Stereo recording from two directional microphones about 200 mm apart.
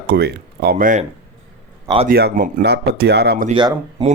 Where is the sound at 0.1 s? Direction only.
55° right (ahead or behind).